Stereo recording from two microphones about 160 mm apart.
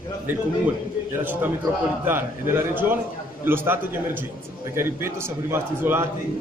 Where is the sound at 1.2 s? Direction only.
10° right (ahead or behind).